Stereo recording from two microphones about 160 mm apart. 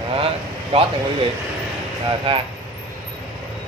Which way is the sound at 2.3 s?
35° right (ahead or behind).